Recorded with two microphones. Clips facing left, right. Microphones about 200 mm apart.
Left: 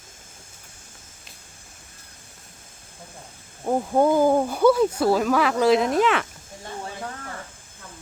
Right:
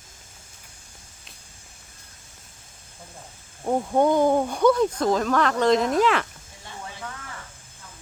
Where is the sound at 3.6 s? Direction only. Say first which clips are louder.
Left 1 dB; 5° left (ahead or behind).